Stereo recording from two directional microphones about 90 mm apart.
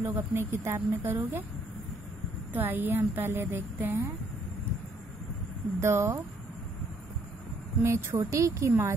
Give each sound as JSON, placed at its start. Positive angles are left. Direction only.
{"t": 0.0, "sound": "a woman's voice", "side_deg": -25}
{"t": 2.5, "sound": "a woman's voice", "side_deg": -20}
{"t": 5.8, "sound": "a woman's voice", "side_deg": -30}
{"t": 7.8, "sound": "a woman's voice", "side_deg": -30}